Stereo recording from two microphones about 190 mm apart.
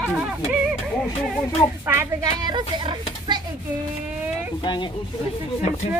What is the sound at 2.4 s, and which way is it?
Speech, 25° right (ahead or behind).